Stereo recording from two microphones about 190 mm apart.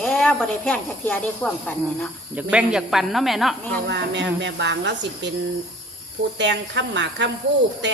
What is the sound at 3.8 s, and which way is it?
A woman's voice, 65° right (ahead or behind).